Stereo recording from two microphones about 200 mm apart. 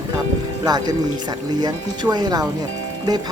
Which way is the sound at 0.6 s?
20° right (ahead or behind).